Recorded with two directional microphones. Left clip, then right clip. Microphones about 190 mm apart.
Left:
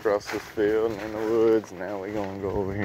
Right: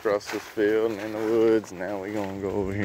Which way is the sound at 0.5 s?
30° right (ahead or behind).